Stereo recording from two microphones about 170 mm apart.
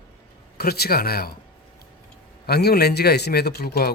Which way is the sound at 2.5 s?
70° left (ahead or behind).